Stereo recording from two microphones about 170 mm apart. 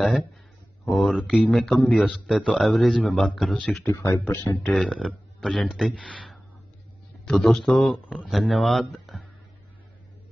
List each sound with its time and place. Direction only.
0.0 s speech: centre (ahead or behind)
3.9 s speech: 15° left (ahead or behind)
4.7 s a man's voice: centre (ahead or behind)